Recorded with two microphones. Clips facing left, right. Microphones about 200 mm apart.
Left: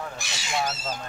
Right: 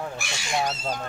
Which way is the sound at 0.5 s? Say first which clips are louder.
Right 2 dB; 20° right (ahead or behind).